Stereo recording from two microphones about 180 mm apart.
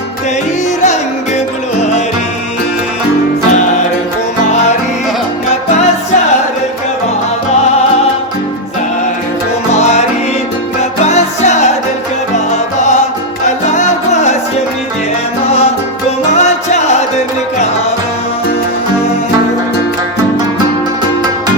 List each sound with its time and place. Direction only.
9.7 s music: 40° left (ahead or behind)
13.7 s music: 40° left (ahead or behind)
16.3 s music: 40° left (ahead or behind)